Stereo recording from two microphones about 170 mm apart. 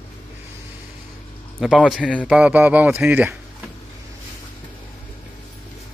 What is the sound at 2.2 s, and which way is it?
Speech, 5° right (ahead or behind).